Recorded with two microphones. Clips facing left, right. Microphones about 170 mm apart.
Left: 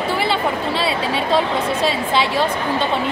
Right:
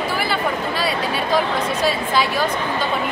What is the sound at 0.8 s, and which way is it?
Speech, 25° left (ahead or behind).